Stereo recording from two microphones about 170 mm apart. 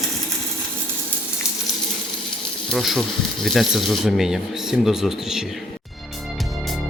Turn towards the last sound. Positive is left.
turn(degrees=0)  # may be behind; listen again after turning